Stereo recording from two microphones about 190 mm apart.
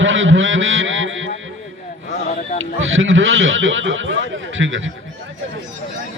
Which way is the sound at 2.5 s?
90° right.